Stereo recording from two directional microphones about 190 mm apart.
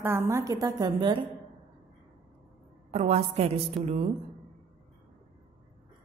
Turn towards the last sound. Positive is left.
turn(degrees=-35)  # may be behind; listen again after turning